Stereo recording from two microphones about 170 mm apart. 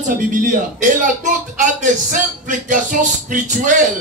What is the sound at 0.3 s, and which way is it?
Speech, 50° right (ahead or behind).